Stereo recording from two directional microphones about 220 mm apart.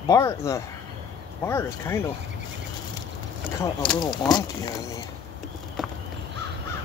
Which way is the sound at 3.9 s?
20° left (ahead or behind).